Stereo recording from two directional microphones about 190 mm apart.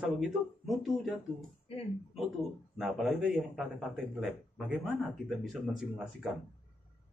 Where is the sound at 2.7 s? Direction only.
Centre (ahead or behind).